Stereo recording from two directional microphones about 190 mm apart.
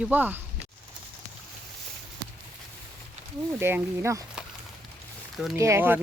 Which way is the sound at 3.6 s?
10° right (ahead or behind).